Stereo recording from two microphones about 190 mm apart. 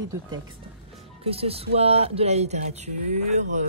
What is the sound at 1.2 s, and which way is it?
Speech, 30° right (ahead or behind).